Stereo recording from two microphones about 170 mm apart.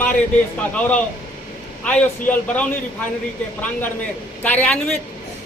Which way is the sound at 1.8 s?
10° left (ahead or behind).